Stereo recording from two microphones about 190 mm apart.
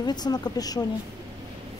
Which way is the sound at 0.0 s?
20° left (ahead or behind).